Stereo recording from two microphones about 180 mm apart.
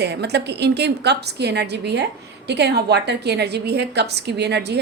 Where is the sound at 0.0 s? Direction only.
70° right (ahead or behind).